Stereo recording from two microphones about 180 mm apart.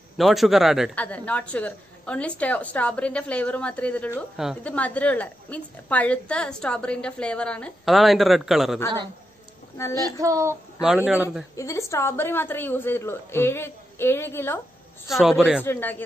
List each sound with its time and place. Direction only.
0.2 s a woman's voice: centre (ahead or behind)
9.9 s child singing: 15° right (ahead or behind)
10.8 s a woman's voice: 5° right (ahead or behind)
11.5 s a woman's voice: 15° left (ahead or behind)
15.0 s a woman's voice: centre (ahead or behind)
15.6 s a woman's voice: 10° left (ahead or behind)